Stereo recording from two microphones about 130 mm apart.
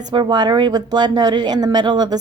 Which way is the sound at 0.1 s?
35° right (ahead or behind).